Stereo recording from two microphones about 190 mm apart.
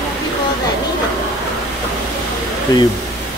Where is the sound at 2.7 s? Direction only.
20° left (ahead or behind).